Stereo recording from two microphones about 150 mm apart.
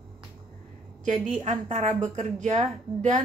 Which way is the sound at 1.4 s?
50° right (ahead or behind).